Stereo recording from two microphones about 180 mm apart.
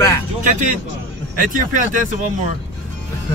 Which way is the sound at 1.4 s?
50° right (ahead or behind).